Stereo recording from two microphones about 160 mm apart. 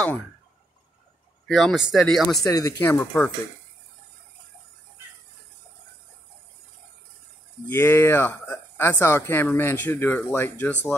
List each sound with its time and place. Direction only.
1.5 s speech: centre (ahead or behind)
2.4 s a woman's voice: 20° left (ahead or behind)
7.6 s a woman's voice: 15° left (ahead or behind)